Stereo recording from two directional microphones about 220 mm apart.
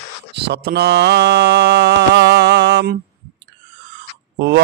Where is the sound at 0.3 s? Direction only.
50° right (ahead or behind).